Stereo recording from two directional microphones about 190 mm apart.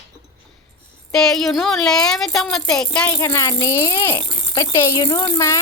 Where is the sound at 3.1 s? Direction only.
15° left (ahead or behind).